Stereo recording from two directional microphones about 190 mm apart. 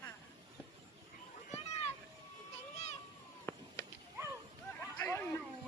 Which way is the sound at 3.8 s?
20° left (ahead or behind).